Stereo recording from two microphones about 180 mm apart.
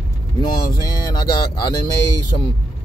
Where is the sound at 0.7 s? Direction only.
20° left (ahead or behind).